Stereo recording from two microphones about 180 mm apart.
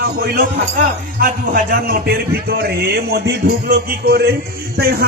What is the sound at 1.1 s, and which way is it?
Speech, 55° right (ahead or behind).